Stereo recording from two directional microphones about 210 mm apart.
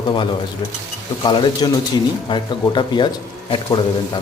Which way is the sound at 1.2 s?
20° left (ahead or behind).